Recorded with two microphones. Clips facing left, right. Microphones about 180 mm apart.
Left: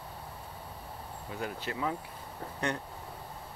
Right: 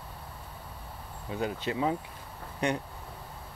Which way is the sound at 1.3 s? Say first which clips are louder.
Right 6 dB; 20° right (ahead or behind).